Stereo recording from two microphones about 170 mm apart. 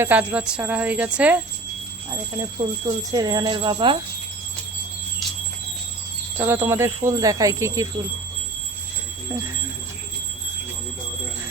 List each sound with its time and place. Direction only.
0.0 s speech: 10° right (ahead or behind)
2.6 s speech: 20° right (ahead or behind)
6.3 s speech: 15° right (ahead or behind)